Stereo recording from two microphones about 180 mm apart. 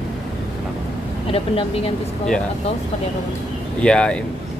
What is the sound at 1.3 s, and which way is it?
Speech, 30° left (ahead or behind).